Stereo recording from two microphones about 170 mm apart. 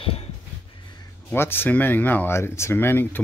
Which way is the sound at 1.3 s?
10° left (ahead or behind).